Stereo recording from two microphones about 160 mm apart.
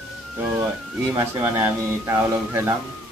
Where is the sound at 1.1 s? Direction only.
20° right (ahead or behind).